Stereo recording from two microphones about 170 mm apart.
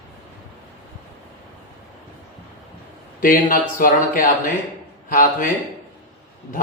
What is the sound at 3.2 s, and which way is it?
Speech, 55° left (ahead or behind).